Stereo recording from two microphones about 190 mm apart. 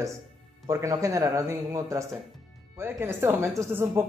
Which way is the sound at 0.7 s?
15° right (ahead or behind).